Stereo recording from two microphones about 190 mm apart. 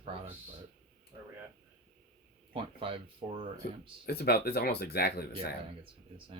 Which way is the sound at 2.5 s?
25° right (ahead or behind).